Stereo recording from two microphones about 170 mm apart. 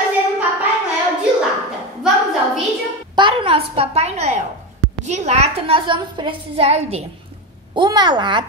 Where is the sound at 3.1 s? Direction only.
30° right (ahead or behind).